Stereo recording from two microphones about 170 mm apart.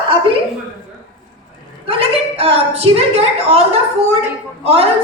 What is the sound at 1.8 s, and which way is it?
A woman's voice, 35° right (ahead or behind).